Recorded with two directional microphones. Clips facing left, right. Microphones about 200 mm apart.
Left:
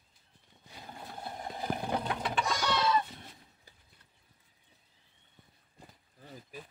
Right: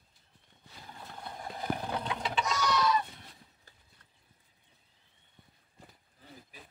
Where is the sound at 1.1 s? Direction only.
25° left (ahead or behind).